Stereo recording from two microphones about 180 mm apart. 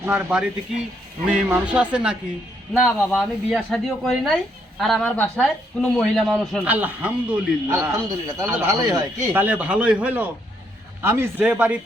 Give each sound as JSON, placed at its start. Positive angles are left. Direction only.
{"t": 0.0, "sound": "a man's voice", "side_deg": -5}